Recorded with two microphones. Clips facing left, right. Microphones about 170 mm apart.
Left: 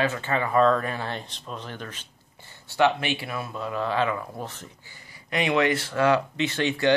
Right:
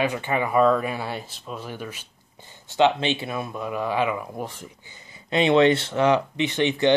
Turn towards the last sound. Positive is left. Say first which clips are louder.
# right 3 dB
turn(degrees=-20)  # may be behind; listen again after turning